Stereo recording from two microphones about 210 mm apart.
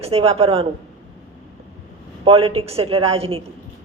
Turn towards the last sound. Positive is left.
turn(degrees=-30)  # may be behind; listen again after turning